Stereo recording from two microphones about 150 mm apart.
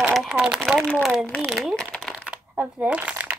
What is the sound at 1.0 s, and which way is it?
Speech, 5° left (ahead or behind).